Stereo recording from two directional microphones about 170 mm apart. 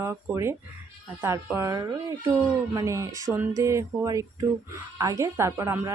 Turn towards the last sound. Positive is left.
turn(degrees=-15)  # may be behind; listen again after turning